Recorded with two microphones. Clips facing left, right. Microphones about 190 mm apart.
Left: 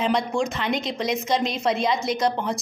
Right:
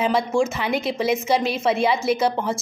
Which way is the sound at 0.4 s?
5° right (ahead or behind).